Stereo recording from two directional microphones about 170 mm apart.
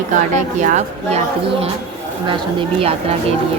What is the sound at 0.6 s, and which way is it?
Speech, 40° right (ahead or behind).